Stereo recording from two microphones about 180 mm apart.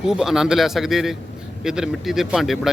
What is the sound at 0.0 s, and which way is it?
Speech, 5° right (ahead or behind).